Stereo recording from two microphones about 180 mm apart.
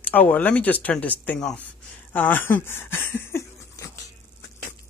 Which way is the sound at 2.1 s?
10° left (ahead or behind).